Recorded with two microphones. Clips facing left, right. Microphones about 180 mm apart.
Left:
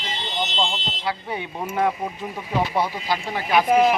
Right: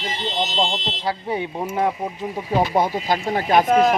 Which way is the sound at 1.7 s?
25° right (ahead or behind).